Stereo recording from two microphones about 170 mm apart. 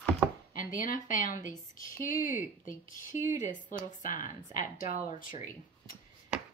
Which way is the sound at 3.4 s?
50° left (ahead or behind).